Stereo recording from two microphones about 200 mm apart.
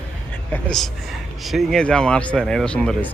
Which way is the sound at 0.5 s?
Centre (ahead or behind).